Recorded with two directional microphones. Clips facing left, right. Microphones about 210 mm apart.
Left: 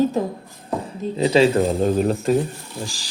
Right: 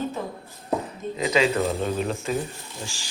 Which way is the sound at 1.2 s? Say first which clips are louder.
Left 6 dB; 35° left (ahead or behind).